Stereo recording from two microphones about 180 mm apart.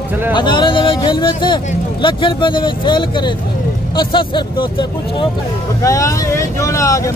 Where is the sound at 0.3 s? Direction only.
25° left (ahead or behind).